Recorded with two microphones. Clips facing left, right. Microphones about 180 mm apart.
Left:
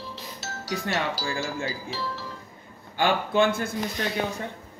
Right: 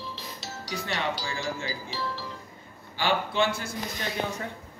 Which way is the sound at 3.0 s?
50° left (ahead or behind).